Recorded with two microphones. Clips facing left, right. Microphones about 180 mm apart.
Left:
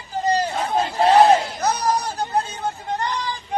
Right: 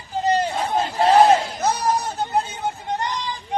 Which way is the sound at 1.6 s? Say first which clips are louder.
Even; 20° right (ahead or behind).